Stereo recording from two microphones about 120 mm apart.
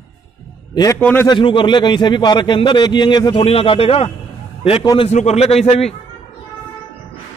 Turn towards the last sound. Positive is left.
turn(degrees=60)  # may be behind; listen again after turning